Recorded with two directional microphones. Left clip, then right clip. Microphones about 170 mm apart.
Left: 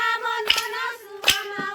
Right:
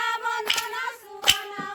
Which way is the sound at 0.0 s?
90° right.